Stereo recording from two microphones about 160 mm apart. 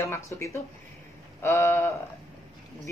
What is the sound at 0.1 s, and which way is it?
Speech, 20° left (ahead or behind).